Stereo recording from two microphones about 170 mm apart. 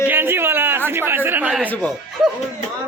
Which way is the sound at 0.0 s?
10° right (ahead or behind).